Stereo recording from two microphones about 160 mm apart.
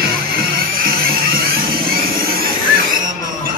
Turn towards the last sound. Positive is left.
turn(degrees=-65)  # may be behind; listen again after turning